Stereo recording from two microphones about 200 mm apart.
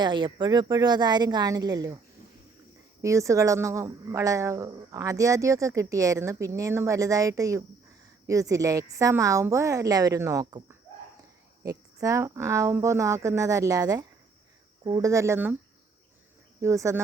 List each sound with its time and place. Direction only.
0.0 s a woman's voice: 25° right (ahead or behind)
3.0 s speech: 15° right (ahead or behind)
16.6 s speech: 15° right (ahead or behind)